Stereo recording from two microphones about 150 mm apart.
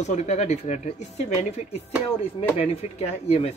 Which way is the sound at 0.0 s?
50° left (ahead or behind).